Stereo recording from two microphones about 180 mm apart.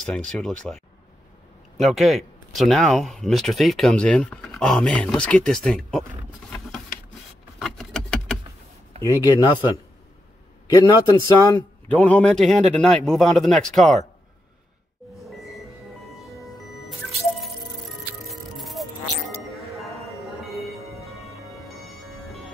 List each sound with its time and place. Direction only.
0.0 s speech: 5° left (ahead or behind)
1.8 s speech: centre (ahead or behind)
7.6 s keys jangling: centre (ahead or behind)
9.0 s speech: 15° left (ahead or behind)
10.9 s speech: 20° left (ahead or behind)
11.9 s speech: 10° left (ahead or behind)
15.1 s a sound: centre (ahead or behind)
18.3 s music: centre (ahead or behind)